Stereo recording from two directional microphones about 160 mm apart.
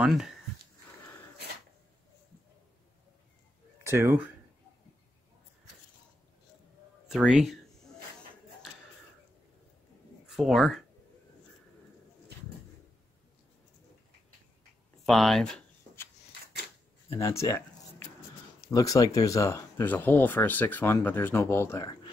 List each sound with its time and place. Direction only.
0.0 s speech: 5° right (ahead or behind)
3.8 s speech: 15° right (ahead or behind)
7.1 s speech: 5° right (ahead or behind)
10.2 s speech: centre (ahead or behind)
15.0 s speech: centre (ahead or behind)
17.2 s speech: 20° left (ahead or behind)